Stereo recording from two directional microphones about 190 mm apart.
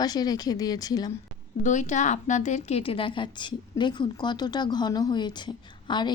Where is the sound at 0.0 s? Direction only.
20° left (ahead or behind).